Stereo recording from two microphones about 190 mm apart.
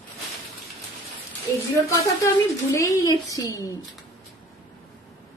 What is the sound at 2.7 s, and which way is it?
A woman's voice, 15° left (ahead or behind).